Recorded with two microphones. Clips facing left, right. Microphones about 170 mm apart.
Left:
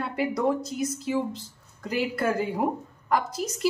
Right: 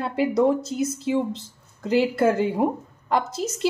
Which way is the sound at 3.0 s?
25° right (ahead or behind).